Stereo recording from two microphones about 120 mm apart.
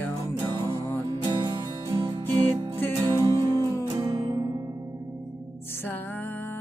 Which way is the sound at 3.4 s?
30° right (ahead or behind).